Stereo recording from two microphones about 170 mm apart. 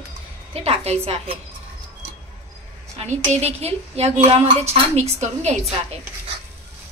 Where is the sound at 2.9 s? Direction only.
40° right (ahead or behind).